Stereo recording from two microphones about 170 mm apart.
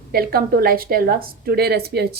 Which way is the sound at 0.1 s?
60° right (ahead or behind).